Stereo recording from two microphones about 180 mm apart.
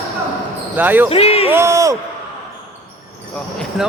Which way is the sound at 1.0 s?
35° left (ahead or behind).